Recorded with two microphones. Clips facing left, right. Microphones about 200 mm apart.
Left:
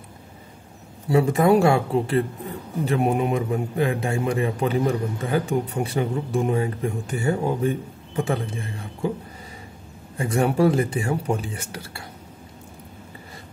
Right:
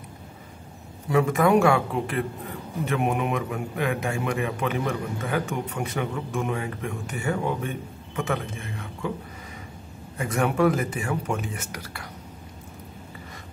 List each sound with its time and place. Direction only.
1.0 s a man's voice: 30° left (ahead or behind)
10.1 s a man's voice: 30° left (ahead or behind)